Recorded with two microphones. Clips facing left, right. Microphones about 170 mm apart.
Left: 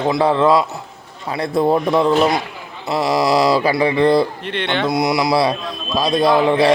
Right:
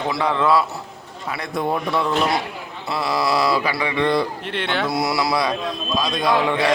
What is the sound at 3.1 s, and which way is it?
A man's voice, 35° left (ahead or behind).